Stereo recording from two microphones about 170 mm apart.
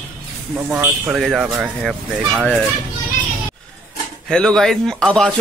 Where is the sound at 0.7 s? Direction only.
10° right (ahead or behind).